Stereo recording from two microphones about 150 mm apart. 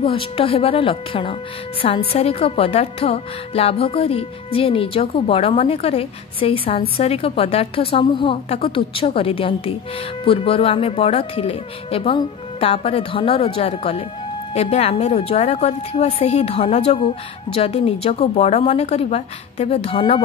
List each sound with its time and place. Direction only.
0.0 s a woman's voice: 40° left (ahead or behind)